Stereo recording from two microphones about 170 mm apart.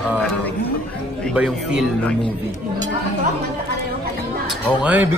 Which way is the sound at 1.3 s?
5° right (ahead or behind).